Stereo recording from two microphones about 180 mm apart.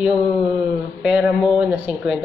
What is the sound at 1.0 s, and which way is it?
A woman's voice, 5° right (ahead or behind).